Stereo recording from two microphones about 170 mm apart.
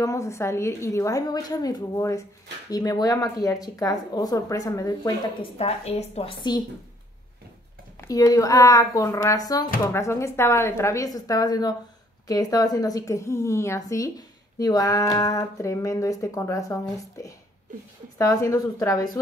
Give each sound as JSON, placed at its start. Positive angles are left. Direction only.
{"t": 0.0, "sound": "a woman's voice", "side_deg": 20}
{"t": 5.6, "sound": "a woman's voice", "side_deg": 35}
{"t": 8.0, "sound": "a woman's voice", "side_deg": 20}
{"t": 18.1, "sound": "a woman's voice", "side_deg": 20}